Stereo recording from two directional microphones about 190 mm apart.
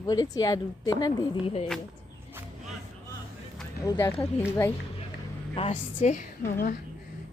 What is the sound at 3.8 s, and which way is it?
Speech, 15° left (ahead or behind).